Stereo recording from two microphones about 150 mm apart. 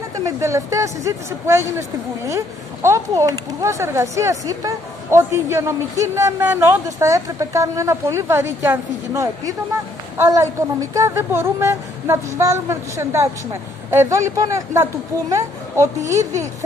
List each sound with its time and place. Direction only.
0.2 s speech: 20° right (ahead or behind)